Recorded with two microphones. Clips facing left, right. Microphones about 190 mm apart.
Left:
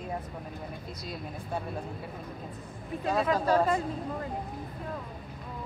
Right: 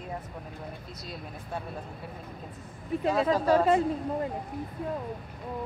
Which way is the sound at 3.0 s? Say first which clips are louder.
Right 2 dB; 25° right (ahead or behind).